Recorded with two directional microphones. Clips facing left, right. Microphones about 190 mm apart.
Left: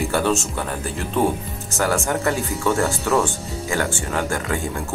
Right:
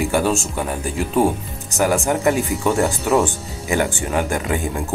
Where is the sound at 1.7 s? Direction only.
15° right (ahead or behind).